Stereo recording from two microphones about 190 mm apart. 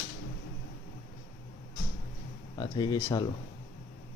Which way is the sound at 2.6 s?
20° left (ahead or behind).